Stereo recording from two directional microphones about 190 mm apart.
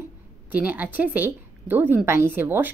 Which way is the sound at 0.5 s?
10° right (ahead or behind).